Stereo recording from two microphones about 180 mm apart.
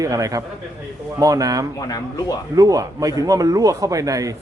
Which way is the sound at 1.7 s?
20° left (ahead or behind).